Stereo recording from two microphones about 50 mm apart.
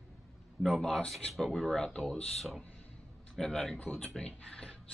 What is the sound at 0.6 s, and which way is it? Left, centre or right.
Speech, centre.